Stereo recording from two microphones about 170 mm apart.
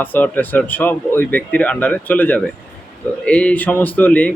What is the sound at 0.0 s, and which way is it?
Speech, 10° left (ahead or behind).